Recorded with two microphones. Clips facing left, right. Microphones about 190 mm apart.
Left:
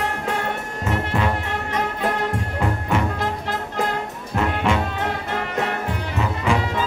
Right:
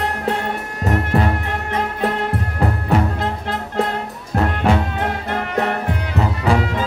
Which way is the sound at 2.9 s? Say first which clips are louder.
Right 4 dB; 40° right (ahead or behind).